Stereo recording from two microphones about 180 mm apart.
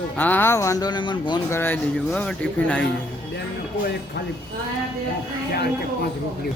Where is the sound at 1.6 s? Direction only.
10° left (ahead or behind).